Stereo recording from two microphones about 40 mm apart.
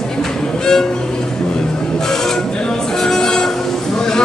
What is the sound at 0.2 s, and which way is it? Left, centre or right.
Violin, centre.